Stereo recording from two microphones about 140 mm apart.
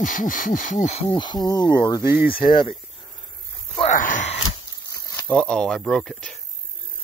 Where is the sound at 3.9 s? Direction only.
65° left (ahead or behind).